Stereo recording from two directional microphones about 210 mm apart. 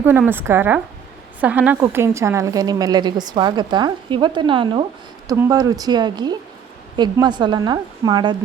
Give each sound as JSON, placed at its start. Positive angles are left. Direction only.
{"t": 0.0, "sound": "a woman's voice", "side_deg": -10}